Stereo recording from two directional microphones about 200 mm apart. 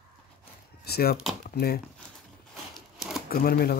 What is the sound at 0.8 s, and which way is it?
Speech, 50° left (ahead or behind).